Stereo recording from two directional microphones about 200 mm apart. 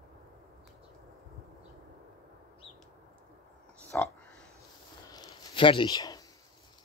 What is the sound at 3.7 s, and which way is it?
Oink, 5° left (ahead or behind).